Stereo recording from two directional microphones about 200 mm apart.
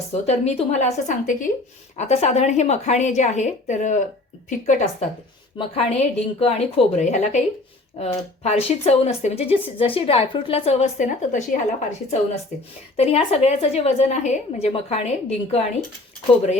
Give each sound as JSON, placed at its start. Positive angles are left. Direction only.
{"t": 0.1, "sound": "speech", "side_deg": 30}
{"t": 13.0, "sound": "speech", "side_deg": 30}